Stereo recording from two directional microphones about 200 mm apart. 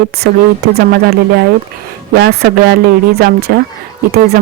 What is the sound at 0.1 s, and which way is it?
Speech, 50° right (ahead or behind).